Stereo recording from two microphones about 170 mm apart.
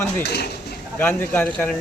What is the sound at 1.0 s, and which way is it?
Speech, 10° left (ahead or behind).